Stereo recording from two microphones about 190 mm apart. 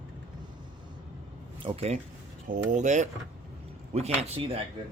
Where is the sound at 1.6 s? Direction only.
35° right (ahead or behind).